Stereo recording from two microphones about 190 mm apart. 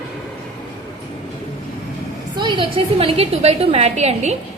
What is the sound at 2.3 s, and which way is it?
A woman's voice, 25° right (ahead or behind).